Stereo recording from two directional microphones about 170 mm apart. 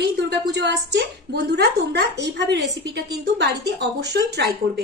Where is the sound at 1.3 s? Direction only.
75° right (ahead or behind).